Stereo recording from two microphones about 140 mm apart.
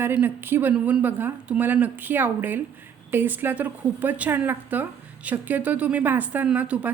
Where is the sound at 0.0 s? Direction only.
15° right (ahead or behind).